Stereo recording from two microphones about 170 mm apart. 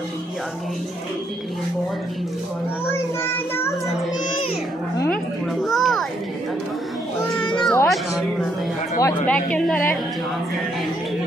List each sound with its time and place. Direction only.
2.9 s a woman's voice: 15° left (ahead or behind)
4.9 s a woman's voice: 15° left (ahead or behind)
5.6 s a child's voice: centre (ahead or behind)
7.5 s music: 10° left (ahead or behind)
9.0 s a woman's voice: 10° left (ahead or behind)